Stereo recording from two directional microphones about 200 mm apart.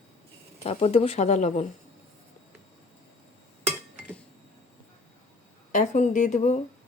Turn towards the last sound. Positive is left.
turn(degrees=35)  # may be behind; listen again after turning